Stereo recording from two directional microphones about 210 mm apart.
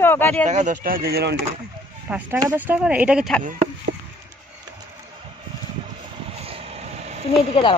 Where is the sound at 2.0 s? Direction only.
10° right (ahead or behind).